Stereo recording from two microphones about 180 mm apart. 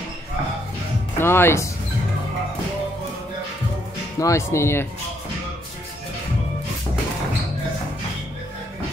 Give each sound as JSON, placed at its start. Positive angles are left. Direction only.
{"t": 1.1, "sound": "speech", "side_deg": 15}
{"t": 4.2, "sound": "speech", "side_deg": 15}